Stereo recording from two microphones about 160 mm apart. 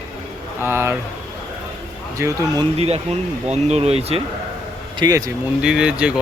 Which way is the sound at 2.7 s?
40° right (ahead or behind).